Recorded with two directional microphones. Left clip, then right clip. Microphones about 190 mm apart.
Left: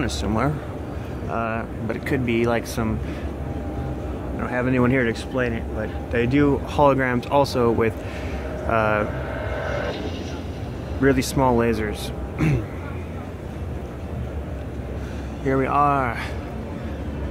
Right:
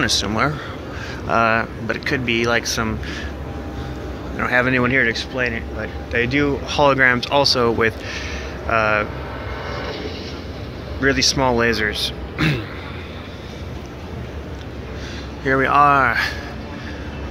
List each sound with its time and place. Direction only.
0.0 s speech: 5° left (ahead or behind)
1.3 s speech: 10° right (ahead or behind)
1.9 s speech: 15° left (ahead or behind)
4.4 s speech: centre (ahead or behind)
4.8 s speech: 25° left (ahead or behind)
11.0 s speech: 20° left (ahead or behind)
15.4 s speech: centre (ahead or behind)